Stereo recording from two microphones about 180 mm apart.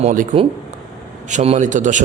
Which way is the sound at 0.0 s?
45° right (ahead or behind).